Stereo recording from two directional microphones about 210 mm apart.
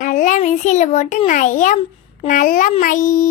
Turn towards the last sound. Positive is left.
turn(degrees=40)  # may be behind; listen again after turning